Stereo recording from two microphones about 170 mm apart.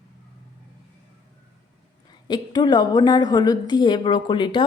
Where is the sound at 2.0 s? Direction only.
25° left (ahead or behind).